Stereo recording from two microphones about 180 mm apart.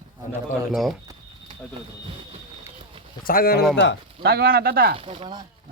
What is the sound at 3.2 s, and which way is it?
Speech, 55° left (ahead or behind).